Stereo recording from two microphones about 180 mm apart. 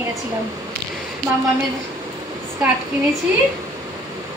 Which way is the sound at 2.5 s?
15° right (ahead or behind).